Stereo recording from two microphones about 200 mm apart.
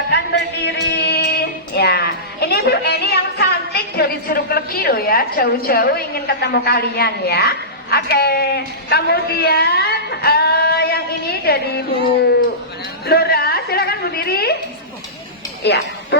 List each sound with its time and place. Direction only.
0.1 s speech: 55° left (ahead or behind)
13.1 s a sound: 55° left (ahead or behind)
15.6 s speech: 55° left (ahead or behind)